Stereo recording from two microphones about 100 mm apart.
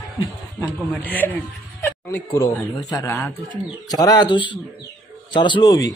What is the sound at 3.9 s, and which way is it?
Speech, 40° left (ahead or behind).